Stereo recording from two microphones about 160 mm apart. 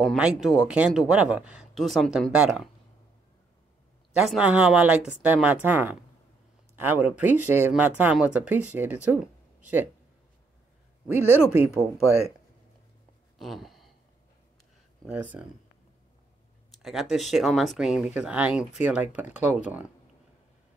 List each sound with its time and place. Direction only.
0.0 s speech: centre (ahead or behind)
4.1 s speech: 5° right (ahead or behind)
9.2 s a sound: 10° right (ahead or behind)
11.3 s speech: 10° right (ahead or behind)
13.4 s a sound: centre (ahead or behind)
15.0 s speech: 10° right (ahead or behind)
16.7 s speech: centre (ahead or behind)